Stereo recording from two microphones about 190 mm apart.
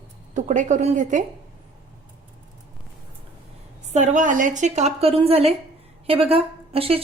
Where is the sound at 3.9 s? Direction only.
40° right (ahead or behind).